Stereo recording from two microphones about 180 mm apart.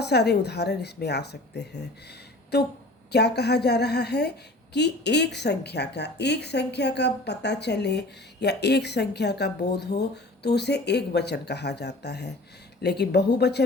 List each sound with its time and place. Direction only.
0.0 s a woman's voice: 65° left (ahead or behind)